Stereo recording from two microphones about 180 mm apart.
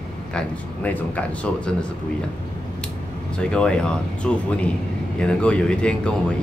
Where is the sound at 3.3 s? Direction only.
5° left (ahead or behind).